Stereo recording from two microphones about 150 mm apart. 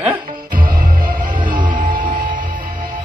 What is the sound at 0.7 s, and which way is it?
Music, 70° right (ahead or behind).